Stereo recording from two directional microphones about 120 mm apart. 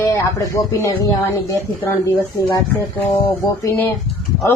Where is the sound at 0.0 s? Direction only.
25° left (ahead or behind).